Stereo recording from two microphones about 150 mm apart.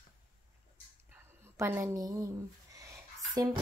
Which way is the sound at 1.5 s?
15° right (ahead or behind).